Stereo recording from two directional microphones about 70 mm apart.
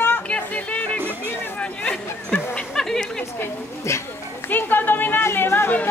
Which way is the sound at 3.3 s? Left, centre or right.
Left.